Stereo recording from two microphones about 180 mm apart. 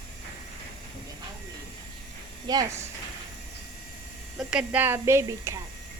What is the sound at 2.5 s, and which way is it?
Speech, 20° right (ahead or behind).